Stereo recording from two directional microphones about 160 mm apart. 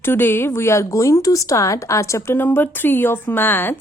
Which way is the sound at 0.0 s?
15° left (ahead or behind).